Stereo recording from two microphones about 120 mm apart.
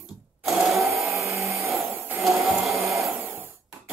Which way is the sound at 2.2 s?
Centre (ahead or behind).